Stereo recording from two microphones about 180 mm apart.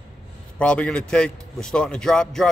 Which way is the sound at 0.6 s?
5° left (ahead or behind).